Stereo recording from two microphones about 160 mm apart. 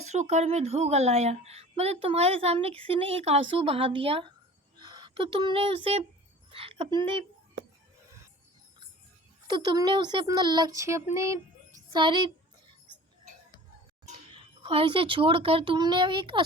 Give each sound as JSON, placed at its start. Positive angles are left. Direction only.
{"t": 0.0, "sound": "a woman's voice", "side_deg": -45}
{"t": 9.5, "sound": "speech", "side_deg": -25}
{"t": 11.9, "sound": "speech", "side_deg": -30}
{"t": 14.0, "sound": "speech", "side_deg": -35}